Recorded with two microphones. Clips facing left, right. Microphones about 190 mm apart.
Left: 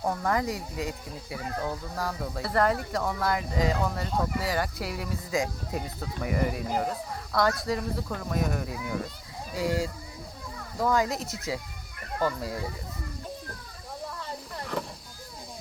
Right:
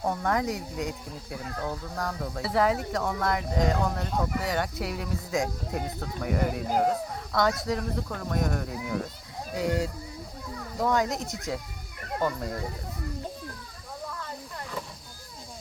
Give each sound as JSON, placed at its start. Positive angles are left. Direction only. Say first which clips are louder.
{"t": 0.0, "sound": "speech", "louder": "even", "side_deg": 0}